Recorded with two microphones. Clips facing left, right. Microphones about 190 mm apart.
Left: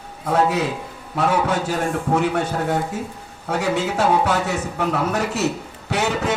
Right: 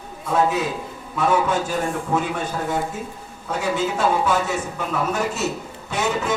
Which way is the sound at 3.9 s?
70° left (ahead or behind).